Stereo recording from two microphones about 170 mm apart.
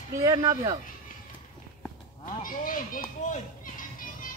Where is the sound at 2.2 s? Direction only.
55° left (ahead or behind).